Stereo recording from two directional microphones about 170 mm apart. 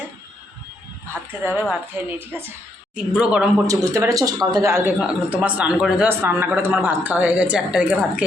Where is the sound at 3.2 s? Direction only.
5° right (ahead or behind).